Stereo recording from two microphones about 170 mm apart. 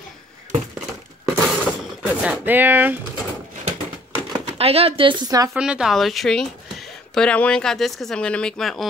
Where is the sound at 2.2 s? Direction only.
10° right (ahead or behind).